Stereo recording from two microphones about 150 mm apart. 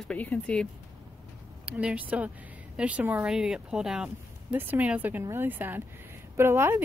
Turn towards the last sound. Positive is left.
turn(degrees=-15)  # may be behind; listen again after turning